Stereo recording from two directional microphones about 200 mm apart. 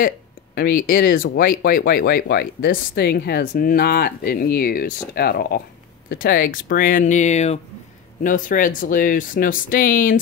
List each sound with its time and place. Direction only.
0.6 s speech: 45° left (ahead or behind)